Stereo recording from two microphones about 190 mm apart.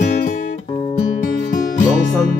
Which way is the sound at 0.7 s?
35° left (ahead or behind).